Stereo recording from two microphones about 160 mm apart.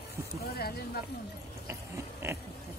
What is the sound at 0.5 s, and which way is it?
Speech, 70° left (ahead or behind).